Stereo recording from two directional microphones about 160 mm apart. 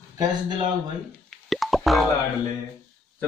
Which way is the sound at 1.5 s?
Centre (ahead or behind).